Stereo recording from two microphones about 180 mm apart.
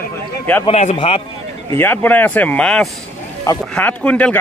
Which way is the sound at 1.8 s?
10° left (ahead or behind).